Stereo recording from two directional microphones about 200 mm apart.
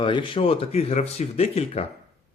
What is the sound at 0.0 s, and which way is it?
Speech, 25° left (ahead or behind).